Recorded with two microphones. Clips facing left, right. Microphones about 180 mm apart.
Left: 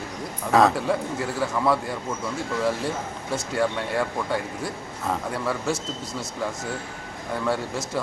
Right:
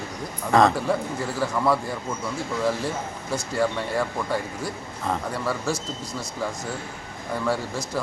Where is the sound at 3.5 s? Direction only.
Centre (ahead or behind).